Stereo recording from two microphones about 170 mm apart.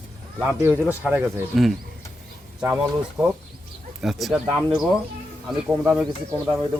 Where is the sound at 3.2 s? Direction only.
5° right (ahead or behind).